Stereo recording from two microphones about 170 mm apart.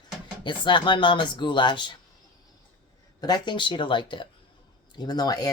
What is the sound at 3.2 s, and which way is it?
Speech, 25° left (ahead or behind).